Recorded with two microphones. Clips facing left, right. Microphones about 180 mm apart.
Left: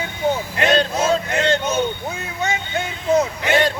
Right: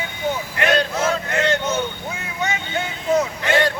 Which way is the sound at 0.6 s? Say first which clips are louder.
Left 1 dB; 25° left (ahead or behind).